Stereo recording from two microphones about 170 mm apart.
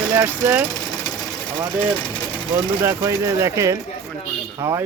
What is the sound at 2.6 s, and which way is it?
Speech, 15° right (ahead or behind).